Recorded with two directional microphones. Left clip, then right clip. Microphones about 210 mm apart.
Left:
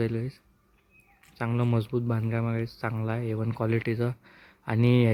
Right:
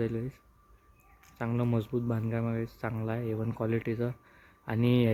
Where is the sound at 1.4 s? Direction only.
10° left (ahead or behind).